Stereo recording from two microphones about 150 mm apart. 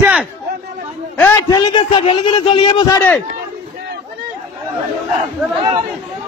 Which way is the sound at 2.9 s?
10° left (ahead or behind).